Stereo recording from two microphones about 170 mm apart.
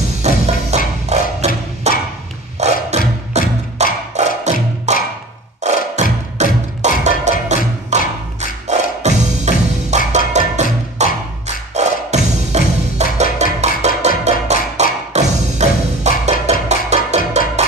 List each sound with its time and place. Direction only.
0.2 s music: 40° right (ahead or behind)